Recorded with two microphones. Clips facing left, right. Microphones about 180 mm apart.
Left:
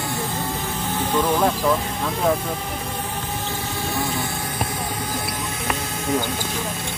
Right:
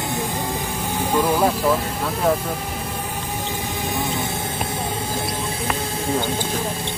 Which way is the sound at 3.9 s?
20° right (ahead or behind).